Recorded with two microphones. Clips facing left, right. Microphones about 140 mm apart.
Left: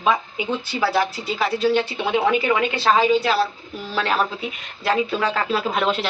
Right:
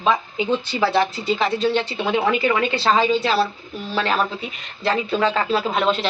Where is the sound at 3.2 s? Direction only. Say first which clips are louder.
Even; centre (ahead or behind).